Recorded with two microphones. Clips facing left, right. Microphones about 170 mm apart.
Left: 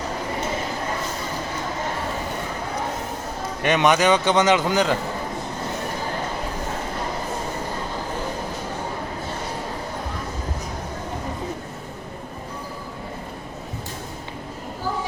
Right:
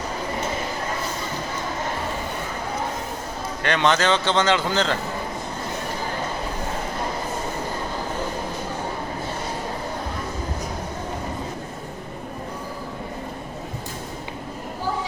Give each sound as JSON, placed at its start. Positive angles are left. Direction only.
{"t": 3.6, "sound": "a man's voice", "side_deg": 20}